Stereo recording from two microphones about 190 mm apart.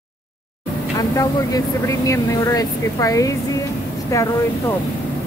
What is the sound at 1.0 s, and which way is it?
Speech, 20° left (ahead or behind).